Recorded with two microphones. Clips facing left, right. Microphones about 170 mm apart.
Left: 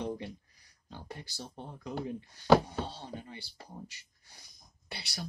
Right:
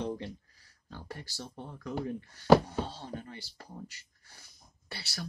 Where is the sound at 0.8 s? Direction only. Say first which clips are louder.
Right 1 dB; 20° left (ahead or behind).